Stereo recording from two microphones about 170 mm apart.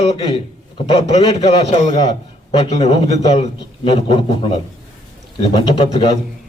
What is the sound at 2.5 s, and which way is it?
A man's voice, 35° left (ahead or behind).